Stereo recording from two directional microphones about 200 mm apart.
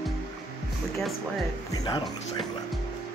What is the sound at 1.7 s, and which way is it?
Speech, 20° left (ahead or behind).